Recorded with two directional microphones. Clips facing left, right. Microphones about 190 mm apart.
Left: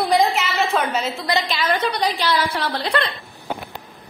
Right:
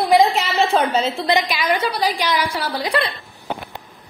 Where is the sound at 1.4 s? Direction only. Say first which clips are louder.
Right 1 dB; 15° right (ahead or behind).